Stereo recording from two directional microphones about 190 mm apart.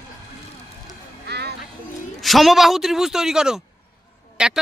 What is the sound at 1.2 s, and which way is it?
Music, 60° right (ahead or behind).